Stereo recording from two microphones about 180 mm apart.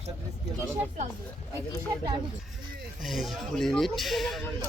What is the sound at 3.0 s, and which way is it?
Speech, centre (ahead or behind).